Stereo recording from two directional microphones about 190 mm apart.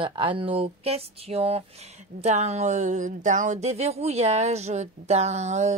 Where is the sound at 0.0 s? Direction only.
25° right (ahead or behind).